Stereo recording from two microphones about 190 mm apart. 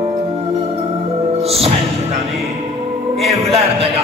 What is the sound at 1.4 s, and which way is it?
Music, 30° right (ahead or behind).